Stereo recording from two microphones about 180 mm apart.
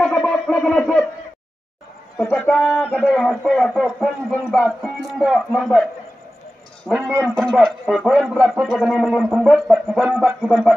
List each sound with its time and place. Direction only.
0.0 s a sound: centre (ahead or behind)
2.3 s a man's voice: 5° left (ahead or behind)
7.1 s a man's voice: 15° right (ahead or behind)
7.5 s a man's voice: centre (ahead or behind)
10.0 s a man's voice: 10° right (ahead or behind)
10.4 s a man's voice: 5° left (ahead or behind)